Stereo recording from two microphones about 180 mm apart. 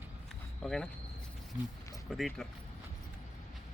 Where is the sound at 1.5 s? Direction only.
10° right (ahead or behind).